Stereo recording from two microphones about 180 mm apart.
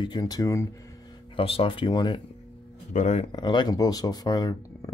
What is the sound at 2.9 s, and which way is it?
Speech, 40° left (ahead or behind).